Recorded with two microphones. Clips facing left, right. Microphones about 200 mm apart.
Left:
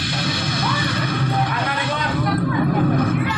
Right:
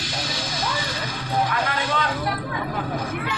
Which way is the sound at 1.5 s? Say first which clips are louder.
Left 1 dB; 60° left (ahead or behind).